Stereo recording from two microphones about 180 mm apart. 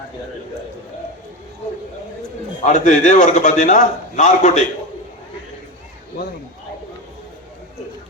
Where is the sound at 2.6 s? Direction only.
40° left (ahead or behind).